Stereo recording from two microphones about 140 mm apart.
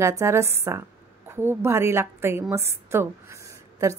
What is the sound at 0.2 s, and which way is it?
A woman's voice, 20° right (ahead or behind).